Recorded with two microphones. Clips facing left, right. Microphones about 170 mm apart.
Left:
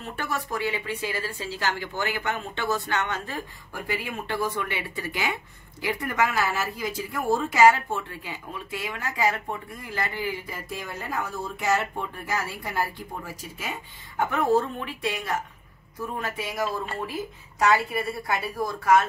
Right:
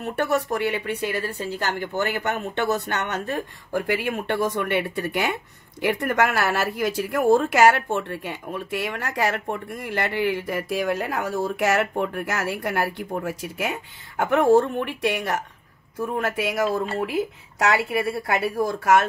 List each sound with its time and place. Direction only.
0.0 s speech: 65° right (ahead or behind)